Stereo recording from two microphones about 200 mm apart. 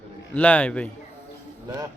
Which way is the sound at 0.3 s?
10° left (ahead or behind).